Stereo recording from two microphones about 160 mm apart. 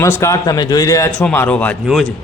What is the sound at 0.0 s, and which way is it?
A man's voice, 20° left (ahead or behind).